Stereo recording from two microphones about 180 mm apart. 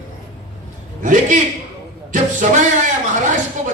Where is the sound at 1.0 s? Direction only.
45° right (ahead or behind).